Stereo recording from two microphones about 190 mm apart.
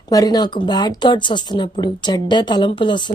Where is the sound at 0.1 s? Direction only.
20° left (ahead or behind).